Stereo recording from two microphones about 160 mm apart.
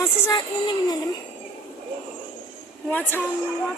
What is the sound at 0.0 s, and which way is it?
Child singing, 25° left (ahead or behind).